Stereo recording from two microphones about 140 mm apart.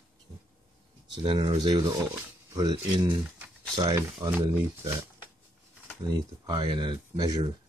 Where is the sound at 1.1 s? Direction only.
35° right (ahead or behind).